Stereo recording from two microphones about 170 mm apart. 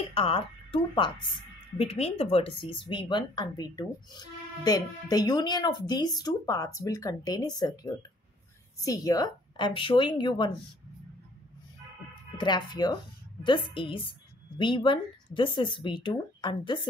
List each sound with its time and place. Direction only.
0.1 s speech: 35° left (ahead or behind)
12.4 s speech: 25° left (ahead or behind)